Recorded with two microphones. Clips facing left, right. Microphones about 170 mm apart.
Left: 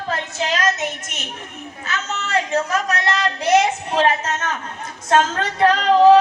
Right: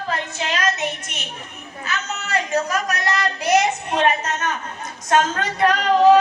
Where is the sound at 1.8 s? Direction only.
25° left (ahead or behind).